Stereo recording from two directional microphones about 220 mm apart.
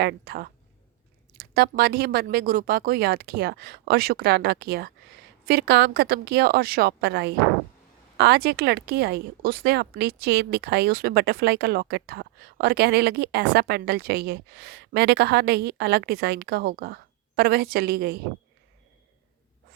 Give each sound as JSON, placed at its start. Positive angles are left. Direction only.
{"t": 0.0, "sound": "speech", "side_deg": -45}